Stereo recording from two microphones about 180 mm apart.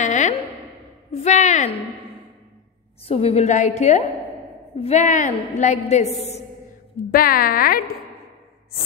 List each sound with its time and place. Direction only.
0.0 s a sound: 40° left (ahead or behind)
1.1 s a woman's voice: 40° left (ahead or behind)
3.1 s a woman's voice: 35° left (ahead or behind)
7.1 s speech: 55° left (ahead or behind)